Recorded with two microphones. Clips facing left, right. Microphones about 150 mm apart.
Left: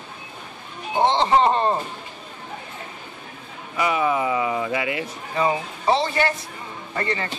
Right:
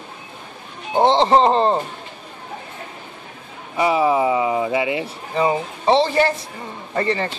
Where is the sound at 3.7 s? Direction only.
30° right (ahead or behind).